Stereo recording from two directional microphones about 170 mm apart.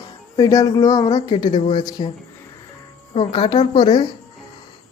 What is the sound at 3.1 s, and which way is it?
Speech, 30° left (ahead or behind).